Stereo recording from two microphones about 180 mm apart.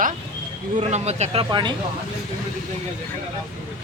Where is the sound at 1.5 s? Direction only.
25° right (ahead or behind).